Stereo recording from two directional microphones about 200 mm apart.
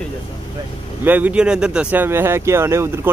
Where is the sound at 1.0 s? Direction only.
5° right (ahead or behind).